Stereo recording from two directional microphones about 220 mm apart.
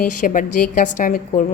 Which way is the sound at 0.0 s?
35° left (ahead or behind).